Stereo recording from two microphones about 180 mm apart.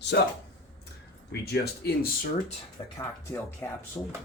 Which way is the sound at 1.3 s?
60° left (ahead or behind).